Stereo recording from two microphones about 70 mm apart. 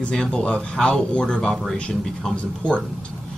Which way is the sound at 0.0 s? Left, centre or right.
Centre.